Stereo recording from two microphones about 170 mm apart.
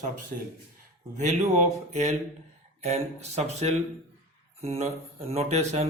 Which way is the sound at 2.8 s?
40° right (ahead or behind).